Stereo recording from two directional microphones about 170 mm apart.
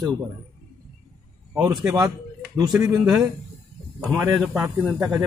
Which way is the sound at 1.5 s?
20° right (ahead or behind).